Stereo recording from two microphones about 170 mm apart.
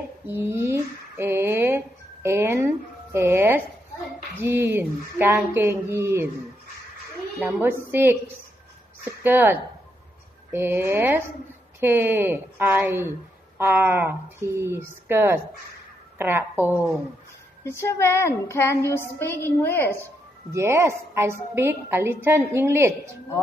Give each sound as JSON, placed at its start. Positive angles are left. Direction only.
{"t": 0.3, "sound": "a sound", "side_deg": -15}
{"t": 4.4, "sound": "speech", "side_deg": -10}
{"t": 7.3, "sound": "a woman's voice", "side_deg": -5}
{"t": 17.6, "sound": "child singing", "side_deg": 15}
{"t": 20.5, "sound": "a woman's voice", "side_deg": -15}